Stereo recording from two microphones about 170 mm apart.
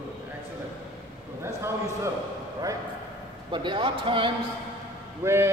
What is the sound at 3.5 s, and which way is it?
Speech, 30° right (ahead or behind).